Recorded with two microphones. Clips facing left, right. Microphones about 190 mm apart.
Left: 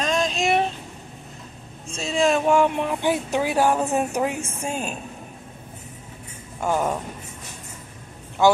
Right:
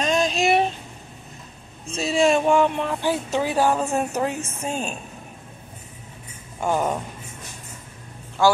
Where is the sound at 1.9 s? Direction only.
5° right (ahead or behind).